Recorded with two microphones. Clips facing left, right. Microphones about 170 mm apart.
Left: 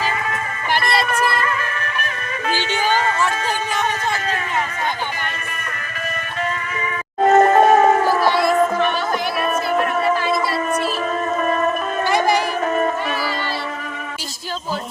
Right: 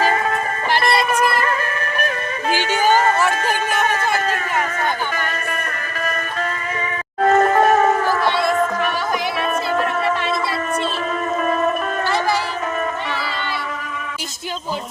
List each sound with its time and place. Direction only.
2.5 s a sound: 45° right (ahead or behind)
7.2 s music: 20° left (ahead or behind)
8.2 s music: 20° right (ahead or behind)